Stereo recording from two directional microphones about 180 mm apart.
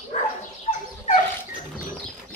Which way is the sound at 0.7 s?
35° left (ahead or behind).